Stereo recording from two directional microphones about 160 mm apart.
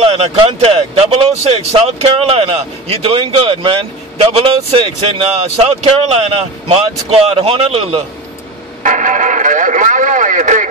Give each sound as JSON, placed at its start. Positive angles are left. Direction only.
{"t": 0.0, "sound": "speech", "side_deg": -35}
{"t": 8.8, "sound": "radio", "side_deg": -50}